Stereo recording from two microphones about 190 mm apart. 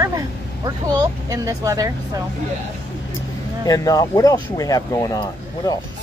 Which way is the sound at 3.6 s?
20° left (ahead or behind).